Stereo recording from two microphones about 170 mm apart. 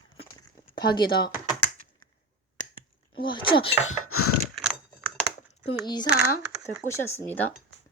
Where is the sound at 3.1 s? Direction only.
30° left (ahead or behind).